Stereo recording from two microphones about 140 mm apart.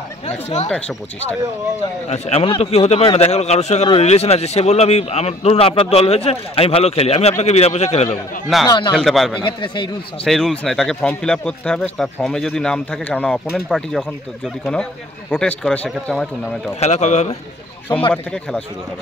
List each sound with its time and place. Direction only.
0.7 s a man's voice: 5° left (ahead or behind)
2.0 s speech: 50° left (ahead or behind)
8.6 s speech: 35° left (ahead or behind)
8.9 s speech: centre (ahead or behind)
9.4 s speech: 35° left (ahead or behind)
10.2 s a man's voice: centre (ahead or behind)
16.8 s speech: 55° left (ahead or behind)
18.1 s speech: 5° left (ahead or behind)